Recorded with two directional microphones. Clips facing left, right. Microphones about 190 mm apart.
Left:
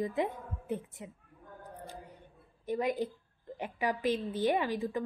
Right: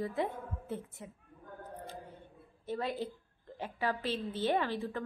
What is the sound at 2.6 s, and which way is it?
A woman's voice, 15° left (ahead or behind).